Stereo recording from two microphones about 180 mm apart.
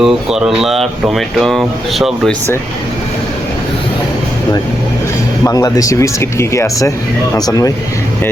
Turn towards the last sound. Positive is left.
turn(degrees=20)  # may be behind; listen again after turning